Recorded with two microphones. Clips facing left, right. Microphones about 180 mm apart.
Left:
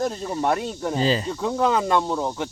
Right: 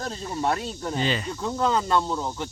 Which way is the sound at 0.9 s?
35° left (ahead or behind).